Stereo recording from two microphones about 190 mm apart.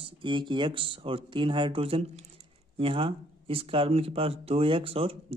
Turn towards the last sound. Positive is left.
turn(degrees=-30)  # may be behind; listen again after turning